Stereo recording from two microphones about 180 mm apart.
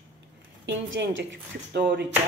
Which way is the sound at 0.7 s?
90° right.